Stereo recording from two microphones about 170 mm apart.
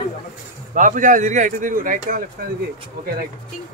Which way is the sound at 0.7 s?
50° right (ahead or behind).